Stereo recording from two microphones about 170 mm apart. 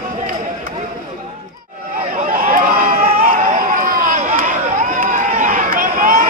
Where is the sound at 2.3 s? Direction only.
55° right (ahead or behind).